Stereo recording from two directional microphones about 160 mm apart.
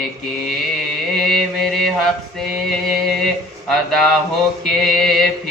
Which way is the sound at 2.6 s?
Centre (ahead or behind).